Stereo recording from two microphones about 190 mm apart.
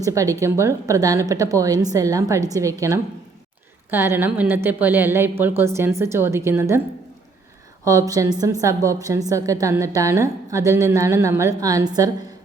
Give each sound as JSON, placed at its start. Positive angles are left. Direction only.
{"t": 0.0, "sound": "a woman's voice", "side_deg": -15}
{"t": 3.9, "sound": "a woman's voice", "side_deg": -10}
{"t": 7.9, "sound": "a woman's voice", "side_deg": -15}